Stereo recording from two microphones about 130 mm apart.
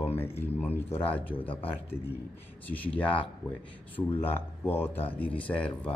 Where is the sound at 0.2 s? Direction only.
20° left (ahead or behind).